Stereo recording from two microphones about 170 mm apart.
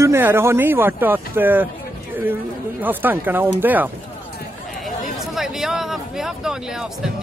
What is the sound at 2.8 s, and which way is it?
Speech, 10° right (ahead or behind).